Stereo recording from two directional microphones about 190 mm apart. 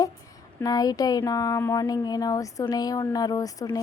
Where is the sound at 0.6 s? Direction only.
20° left (ahead or behind).